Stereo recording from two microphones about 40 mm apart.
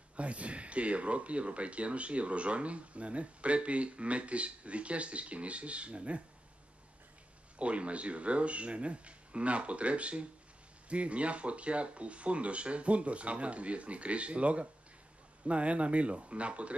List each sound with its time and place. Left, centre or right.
0.1 s speech: right
7.5 s speech: right